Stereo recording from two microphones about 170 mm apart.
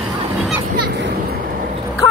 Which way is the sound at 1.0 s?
70° right (ahead or behind).